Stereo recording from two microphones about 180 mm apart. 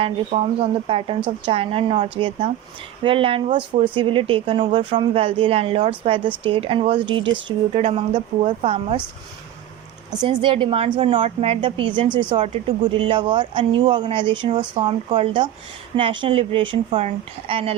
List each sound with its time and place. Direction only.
0.0 s a woman's voice: 35° right (ahead or behind)
10.4 s a woman's voice: 30° right (ahead or behind)